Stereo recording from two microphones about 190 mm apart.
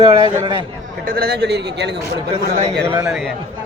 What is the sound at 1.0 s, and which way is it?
Speech, 55° right (ahead or behind).